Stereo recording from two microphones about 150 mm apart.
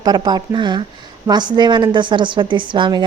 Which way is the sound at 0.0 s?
25° right (ahead or behind).